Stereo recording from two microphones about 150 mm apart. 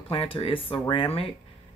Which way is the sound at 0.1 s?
40° left (ahead or behind).